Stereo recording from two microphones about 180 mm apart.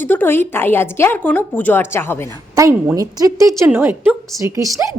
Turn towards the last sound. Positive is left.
turn(degrees=-20)  # may be behind; listen again after turning